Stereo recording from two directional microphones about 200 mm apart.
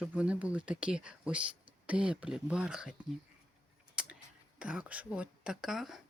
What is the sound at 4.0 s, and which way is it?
Tick-tock, 5° right (ahead or behind).